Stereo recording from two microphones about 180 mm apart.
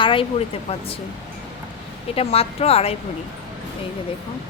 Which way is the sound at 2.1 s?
35° left (ahead or behind).